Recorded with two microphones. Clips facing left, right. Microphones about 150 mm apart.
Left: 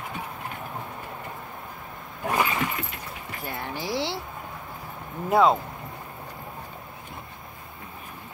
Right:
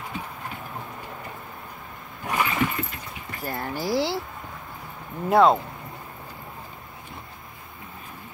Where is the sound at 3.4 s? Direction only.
45° right (ahead or behind).